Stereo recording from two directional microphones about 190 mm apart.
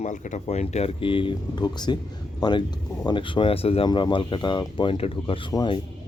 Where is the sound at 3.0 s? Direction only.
25° left (ahead or behind).